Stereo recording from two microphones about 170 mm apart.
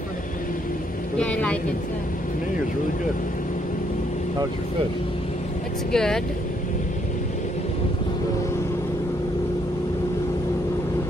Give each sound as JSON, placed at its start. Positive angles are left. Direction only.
{"t": 1.1, "sound": "speech", "side_deg": 10}
{"t": 5.9, "sound": "speech", "side_deg": 5}